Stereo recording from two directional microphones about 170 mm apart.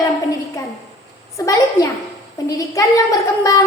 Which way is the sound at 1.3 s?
20° left (ahead or behind).